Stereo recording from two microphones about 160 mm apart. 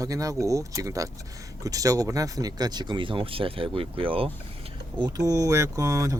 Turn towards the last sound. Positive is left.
turn(degrees=-20)  # may be behind; listen again after turning